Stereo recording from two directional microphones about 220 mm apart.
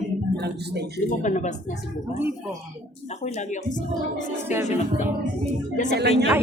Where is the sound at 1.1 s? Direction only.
35° left (ahead or behind).